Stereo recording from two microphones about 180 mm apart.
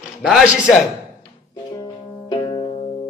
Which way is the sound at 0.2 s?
5° right (ahead or behind).